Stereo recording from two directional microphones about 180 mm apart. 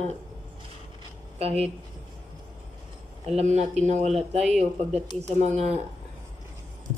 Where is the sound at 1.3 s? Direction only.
35° right (ahead or behind).